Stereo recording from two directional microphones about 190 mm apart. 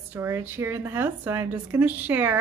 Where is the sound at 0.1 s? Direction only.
10° right (ahead or behind).